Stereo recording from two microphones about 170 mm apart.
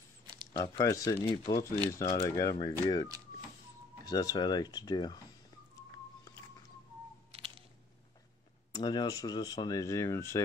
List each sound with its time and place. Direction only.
0.5 s speech: 20° left (ahead or behind)
8.7 s speech: 25° left (ahead or behind)